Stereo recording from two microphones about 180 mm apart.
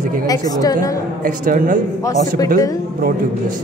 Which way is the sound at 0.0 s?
50° right (ahead or behind).